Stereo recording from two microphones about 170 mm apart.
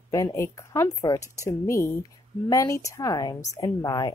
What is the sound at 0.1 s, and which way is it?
A woman's voice, 20° left (ahead or behind).